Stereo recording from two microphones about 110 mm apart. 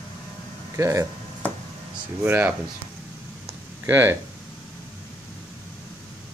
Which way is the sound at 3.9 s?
20° right (ahead or behind).